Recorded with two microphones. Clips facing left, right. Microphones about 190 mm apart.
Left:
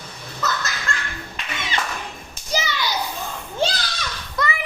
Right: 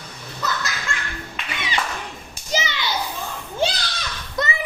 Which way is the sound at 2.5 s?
20° right (ahead or behind).